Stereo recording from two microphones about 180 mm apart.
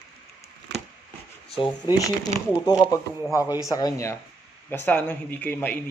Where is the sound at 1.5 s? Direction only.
25° left (ahead or behind).